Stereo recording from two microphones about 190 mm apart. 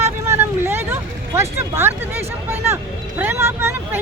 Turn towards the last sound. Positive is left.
turn(degrees=-10)  # may be behind; listen again after turning